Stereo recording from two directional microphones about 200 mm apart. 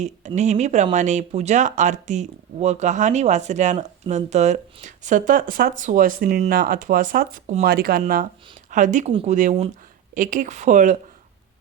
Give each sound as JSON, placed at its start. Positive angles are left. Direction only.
{"t": 0.0, "sound": "speech", "side_deg": -35}